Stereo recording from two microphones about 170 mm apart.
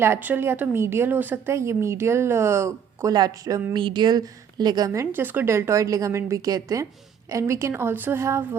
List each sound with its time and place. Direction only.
0.0 s a woman's voice: 10° right (ahead or behind)
4.9 s a woman's voice: 15° right (ahead or behind)